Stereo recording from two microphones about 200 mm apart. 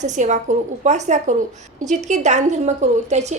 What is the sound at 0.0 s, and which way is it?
A woman's voice, 35° right (ahead or behind).